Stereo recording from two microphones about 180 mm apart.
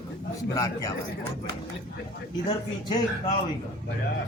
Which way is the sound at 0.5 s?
20° left (ahead or behind).